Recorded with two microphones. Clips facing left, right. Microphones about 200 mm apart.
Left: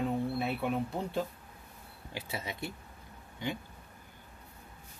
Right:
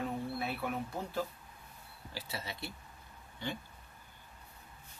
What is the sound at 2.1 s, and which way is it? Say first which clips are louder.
Speech: left 4 dB; 20° left (ahead or behind).